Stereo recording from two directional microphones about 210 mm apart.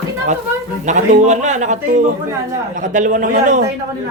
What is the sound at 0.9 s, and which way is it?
A man's voice, 35° right (ahead or behind).